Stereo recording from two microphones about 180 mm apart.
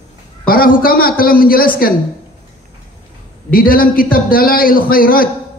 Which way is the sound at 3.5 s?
55° left (ahead or behind).